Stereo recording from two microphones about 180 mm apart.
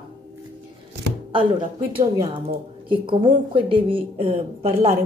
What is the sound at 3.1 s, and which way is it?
A woman's voice, 30° right (ahead or behind).